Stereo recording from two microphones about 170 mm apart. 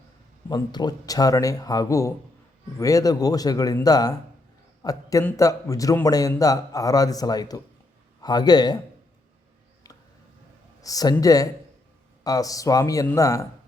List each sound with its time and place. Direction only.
0.4 s a man's voice: 25° left (ahead or behind)
10.8 s a man's voice: 20° left (ahead or behind)